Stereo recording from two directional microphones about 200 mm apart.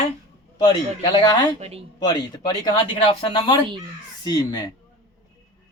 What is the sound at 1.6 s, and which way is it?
Speech, 30° right (ahead or behind).